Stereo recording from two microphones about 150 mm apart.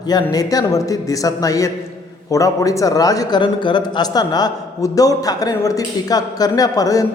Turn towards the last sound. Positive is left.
turn(degrees=25)  # may be behind; listen again after turning